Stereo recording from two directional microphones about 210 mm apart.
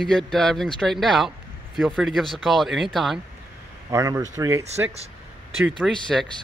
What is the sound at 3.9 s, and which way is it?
Speech, 15° right (ahead or behind).